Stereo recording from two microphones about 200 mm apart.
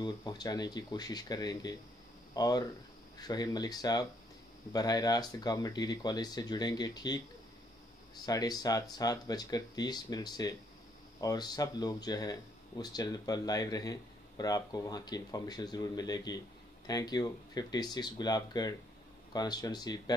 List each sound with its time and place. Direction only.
0.0 s speech: 20° left (ahead or behind)
8.3 s speech: 20° left (ahead or behind)